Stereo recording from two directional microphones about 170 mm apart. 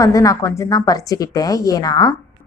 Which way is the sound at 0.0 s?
20° left (ahead or behind).